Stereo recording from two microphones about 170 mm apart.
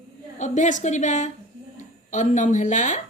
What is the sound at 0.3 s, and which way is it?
A man's voice, 45° left (ahead or behind).